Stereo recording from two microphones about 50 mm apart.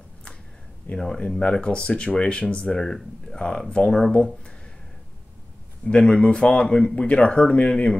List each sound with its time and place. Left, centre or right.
0.9 s speech: centre
1.5 s speech: centre
5.9 s speech: left